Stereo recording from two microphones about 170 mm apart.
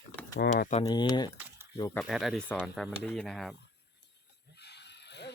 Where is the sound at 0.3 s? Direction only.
80° left.